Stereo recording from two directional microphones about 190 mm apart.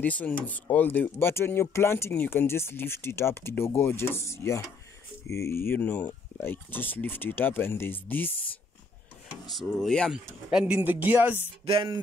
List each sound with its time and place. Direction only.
0.0 s speech: 10° left (ahead or behind)
9.5 s speech: centre (ahead or behind)
11.6 s music: 25° right (ahead or behind)